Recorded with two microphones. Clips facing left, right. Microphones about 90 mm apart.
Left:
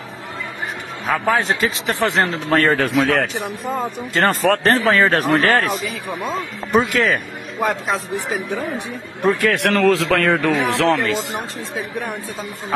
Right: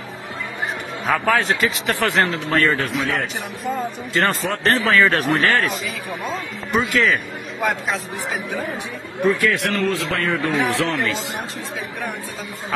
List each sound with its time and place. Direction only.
1.2 s a man's voice: 20° left (ahead or behind)
2.2 s speech: 40° left (ahead or behind)
2.8 s a man's voice: 65° left (ahead or behind)
4.1 s speech: 50° left (ahead or behind)
4.6 s speech: 35° left (ahead or behind)
6.8 s speech: 50° left (ahead or behind)
9.2 s a man's voice: 55° left (ahead or behind); by 10.9 s 90° left
11.0 s speech: 45° left (ahead or behind)